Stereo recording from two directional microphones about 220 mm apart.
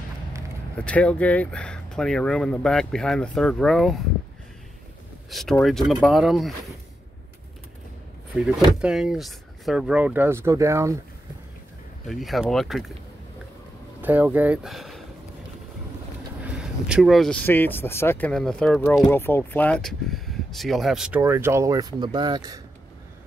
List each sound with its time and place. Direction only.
0.7 s speech: 5° left (ahead or behind)
5.3 s speech: centre (ahead or behind)
8.4 s speech: 5° right (ahead or behind)
12.1 s speech: centre (ahead or behind)
14.0 s speech: 10° right (ahead or behind)
16.4 s speech: 5° right (ahead or behind)